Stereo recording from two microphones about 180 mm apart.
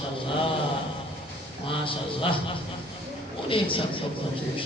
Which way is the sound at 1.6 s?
30° left (ahead or behind).